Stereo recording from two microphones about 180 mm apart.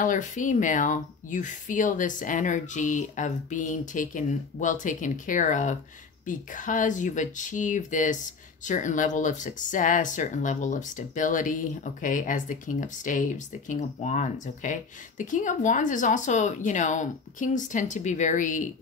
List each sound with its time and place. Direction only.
0.0 s speech: 45° left (ahead or behind)